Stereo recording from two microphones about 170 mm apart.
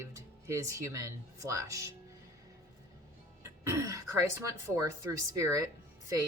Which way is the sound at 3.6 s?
15° right (ahead or behind).